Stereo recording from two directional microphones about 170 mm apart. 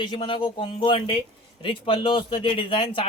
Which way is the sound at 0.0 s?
25° left (ahead or behind).